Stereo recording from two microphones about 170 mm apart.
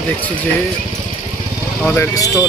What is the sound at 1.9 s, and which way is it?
Speech, 20° left (ahead or behind).